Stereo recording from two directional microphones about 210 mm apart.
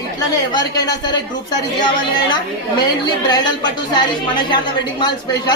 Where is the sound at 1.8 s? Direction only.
20° left (ahead or behind).